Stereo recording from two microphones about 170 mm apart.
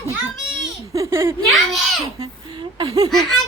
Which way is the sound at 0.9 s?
15° right (ahead or behind).